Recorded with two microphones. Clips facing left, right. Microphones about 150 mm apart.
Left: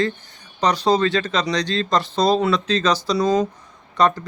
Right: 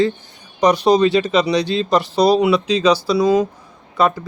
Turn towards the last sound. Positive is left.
turn(degrees=-5)  # may be behind; listen again after turning